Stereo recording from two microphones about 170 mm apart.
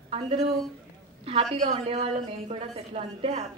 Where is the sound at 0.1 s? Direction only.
35° right (ahead or behind).